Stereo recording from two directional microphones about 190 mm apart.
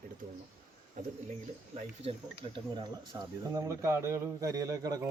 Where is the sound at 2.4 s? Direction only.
25° right (ahead or behind).